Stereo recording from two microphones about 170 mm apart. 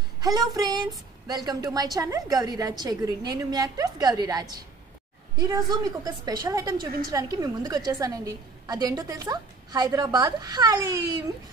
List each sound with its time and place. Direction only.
0.2 s a woman's voice: 20° right (ahead or behind)
5.7 s a woman's voice: 25° right (ahead or behind)